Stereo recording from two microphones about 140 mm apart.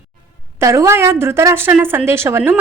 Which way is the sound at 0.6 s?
20° right (ahead or behind).